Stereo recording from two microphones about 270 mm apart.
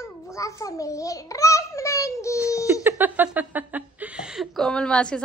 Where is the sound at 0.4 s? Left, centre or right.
Centre.